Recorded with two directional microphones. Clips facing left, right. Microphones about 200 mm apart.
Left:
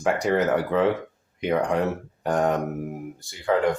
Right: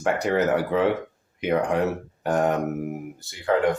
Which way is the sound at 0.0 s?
Centre (ahead or behind).